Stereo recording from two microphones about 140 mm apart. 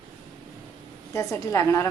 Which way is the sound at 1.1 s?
20° left (ahead or behind).